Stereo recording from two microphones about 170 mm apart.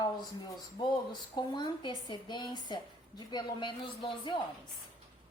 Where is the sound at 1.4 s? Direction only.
25° left (ahead or behind).